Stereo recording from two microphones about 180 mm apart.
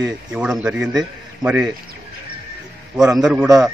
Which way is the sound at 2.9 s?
Centre (ahead or behind).